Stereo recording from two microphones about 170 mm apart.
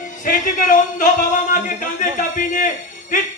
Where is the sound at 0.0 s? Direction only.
50° left (ahead or behind).